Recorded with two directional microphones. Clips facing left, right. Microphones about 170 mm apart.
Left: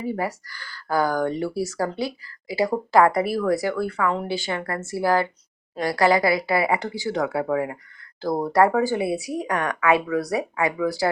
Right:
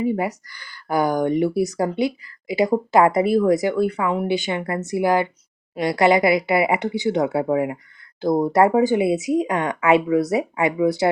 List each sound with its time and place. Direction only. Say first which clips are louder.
0.0 s speech: right 5 dB; 20° right (ahead or behind)